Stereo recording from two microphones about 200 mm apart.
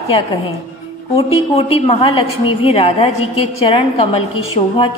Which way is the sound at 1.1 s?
30° left (ahead or behind).